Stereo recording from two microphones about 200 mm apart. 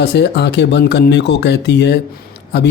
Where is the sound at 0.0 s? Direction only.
60° left (ahead or behind).